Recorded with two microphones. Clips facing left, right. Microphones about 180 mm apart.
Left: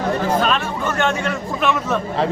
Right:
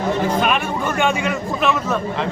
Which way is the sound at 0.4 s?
10° right (ahead or behind).